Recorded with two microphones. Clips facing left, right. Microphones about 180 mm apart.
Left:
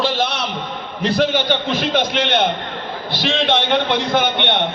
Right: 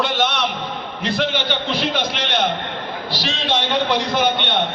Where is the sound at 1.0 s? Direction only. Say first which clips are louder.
Left 5 dB; 40° left (ahead or behind).